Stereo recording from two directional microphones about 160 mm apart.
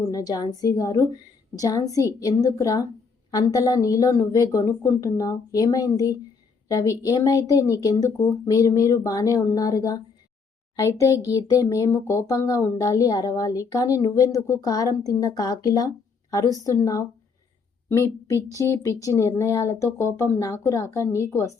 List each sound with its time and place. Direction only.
0.1 s a woman's voice: 20° left (ahead or behind)